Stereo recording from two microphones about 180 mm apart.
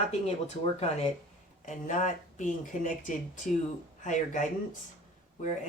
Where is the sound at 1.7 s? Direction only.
40° left (ahead or behind).